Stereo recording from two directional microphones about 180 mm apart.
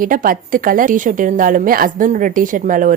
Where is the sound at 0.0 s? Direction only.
50° right (ahead or behind).